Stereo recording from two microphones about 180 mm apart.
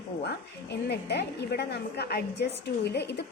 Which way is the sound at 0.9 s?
65° left (ahead or behind).